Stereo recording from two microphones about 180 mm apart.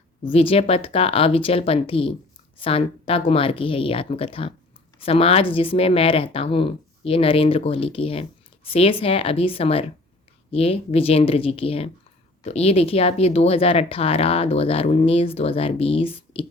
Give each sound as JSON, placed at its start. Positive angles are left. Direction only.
{"t": 0.3, "sound": "speech", "side_deg": 30}